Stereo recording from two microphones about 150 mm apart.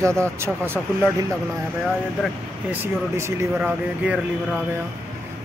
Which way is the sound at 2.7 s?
15° right (ahead or behind).